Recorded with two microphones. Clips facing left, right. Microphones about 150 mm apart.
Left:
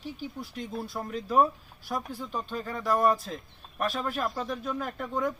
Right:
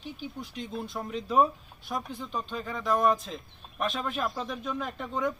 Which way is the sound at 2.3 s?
10° left (ahead or behind).